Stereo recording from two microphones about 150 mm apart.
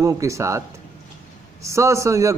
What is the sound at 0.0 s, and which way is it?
A man's voice, 20° right (ahead or behind).